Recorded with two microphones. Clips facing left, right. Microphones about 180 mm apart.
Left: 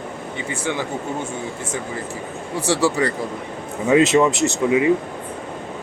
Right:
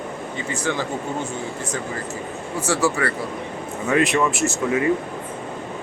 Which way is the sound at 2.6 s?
35° left (ahead or behind).